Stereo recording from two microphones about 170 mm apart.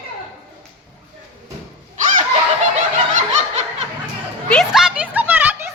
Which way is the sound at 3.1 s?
45° right (ahead or behind).